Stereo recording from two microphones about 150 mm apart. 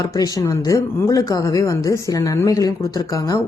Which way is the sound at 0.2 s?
20° left (ahead or behind).